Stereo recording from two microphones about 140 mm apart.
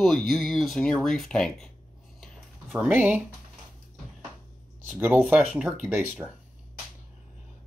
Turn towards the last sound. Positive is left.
turn(degrees=-10)  # may be behind; listen again after turning